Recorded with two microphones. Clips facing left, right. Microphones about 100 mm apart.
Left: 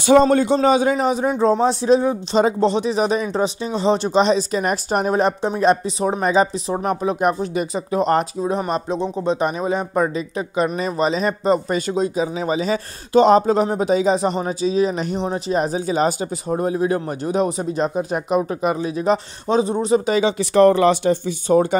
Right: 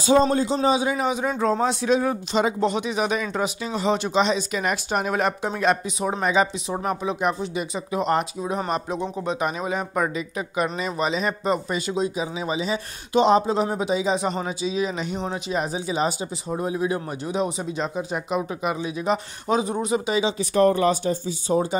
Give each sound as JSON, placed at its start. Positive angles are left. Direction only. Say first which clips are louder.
{"t": 0.0, "sound": "a man's voice", "louder": "left 5 dB", "side_deg": 65}
{"t": 0.9, "sound": "speech", "louder": "left 5 dB", "side_deg": 35}
{"t": 6.9, "sound": "speech", "louder": "left 5 dB", "side_deg": 45}
{"t": 19.4, "sound": "speech", "louder": "left 4 dB", "side_deg": 30}
{"t": 20.3, "sound": "speech", "louder": "left 6 dB", "side_deg": 85}